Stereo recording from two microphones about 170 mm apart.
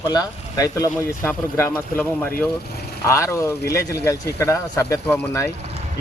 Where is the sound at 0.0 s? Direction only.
20° left (ahead or behind).